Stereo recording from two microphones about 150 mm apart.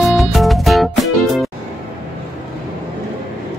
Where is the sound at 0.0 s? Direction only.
Centre (ahead or behind).